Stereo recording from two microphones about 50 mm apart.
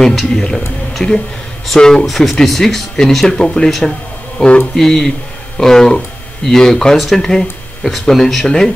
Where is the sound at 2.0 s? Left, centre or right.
Centre; by 4.6 s left.